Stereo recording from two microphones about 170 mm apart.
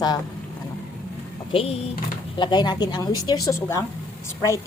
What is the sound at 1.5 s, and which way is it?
A woman's voice, 35° left (ahead or behind).